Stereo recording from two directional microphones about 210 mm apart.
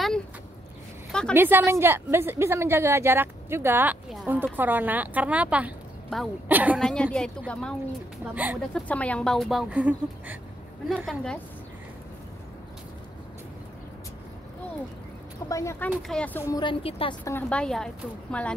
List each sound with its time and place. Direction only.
1.3 s a woman's voice: 10° right (ahead or behind)
6.8 s speech: 5° left (ahead or behind)
15.4 s speech: 15° left (ahead or behind)
16.4 s a woman's voice: 20° left (ahead or behind)
17.2 s speech: 10° left (ahead or behind)